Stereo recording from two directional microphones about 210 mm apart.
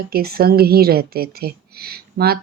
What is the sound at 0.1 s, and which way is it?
Speech, 45° right (ahead or behind).